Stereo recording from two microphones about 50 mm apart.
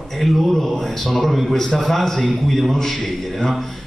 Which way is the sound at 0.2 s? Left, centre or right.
Centre.